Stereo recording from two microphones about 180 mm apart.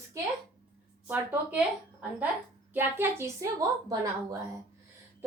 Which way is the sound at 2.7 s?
10° right (ahead or behind).